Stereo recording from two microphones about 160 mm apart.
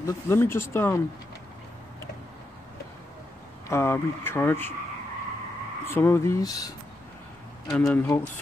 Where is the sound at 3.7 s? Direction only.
15° left (ahead or behind).